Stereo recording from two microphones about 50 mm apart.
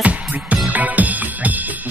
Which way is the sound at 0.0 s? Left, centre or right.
Right.